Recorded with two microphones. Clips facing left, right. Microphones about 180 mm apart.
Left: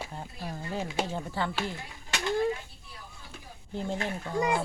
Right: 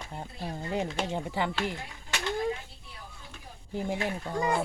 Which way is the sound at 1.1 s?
20° right (ahead or behind).